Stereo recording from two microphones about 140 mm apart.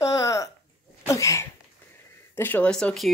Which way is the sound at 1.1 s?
20° left (ahead or behind).